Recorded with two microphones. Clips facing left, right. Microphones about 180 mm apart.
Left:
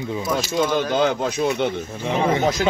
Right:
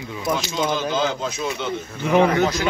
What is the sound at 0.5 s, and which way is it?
Speech, 60° left (ahead or behind).